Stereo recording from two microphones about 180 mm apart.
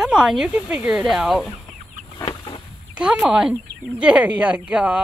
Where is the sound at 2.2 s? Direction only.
30° left (ahead or behind).